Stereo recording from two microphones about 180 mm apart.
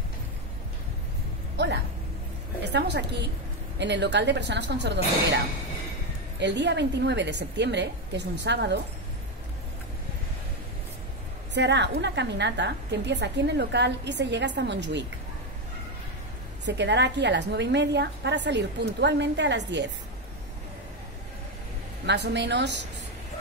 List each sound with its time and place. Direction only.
2.6 s a woman's voice: 75° right (ahead or behind)
6.4 s a woman's voice: 75° right (ahead or behind)
11.5 s a woman's voice: 75° right (ahead or behind)
16.6 s a woman's voice: 75° right (ahead or behind)
22.0 s a woman's voice: 75° right (ahead or behind)